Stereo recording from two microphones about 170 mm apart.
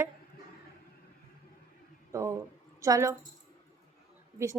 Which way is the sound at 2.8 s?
20° right (ahead or behind).